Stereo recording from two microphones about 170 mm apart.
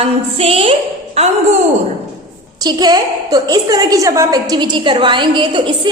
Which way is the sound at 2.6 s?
25° right (ahead or behind).